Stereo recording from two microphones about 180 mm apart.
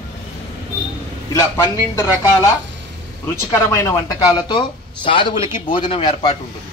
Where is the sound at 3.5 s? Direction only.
15° left (ahead or behind); by 6.4 s 35° left (ahead or behind).